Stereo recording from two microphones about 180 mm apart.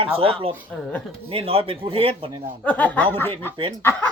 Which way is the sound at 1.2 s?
30° right (ahead or behind).